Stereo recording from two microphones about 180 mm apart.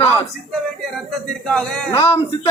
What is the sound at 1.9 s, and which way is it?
Speech, 30° left (ahead or behind).